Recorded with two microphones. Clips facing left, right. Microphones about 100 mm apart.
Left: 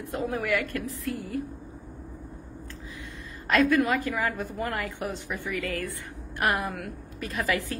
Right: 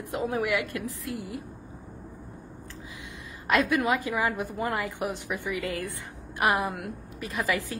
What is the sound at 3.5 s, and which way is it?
A woman's voice, 15° right (ahead or behind).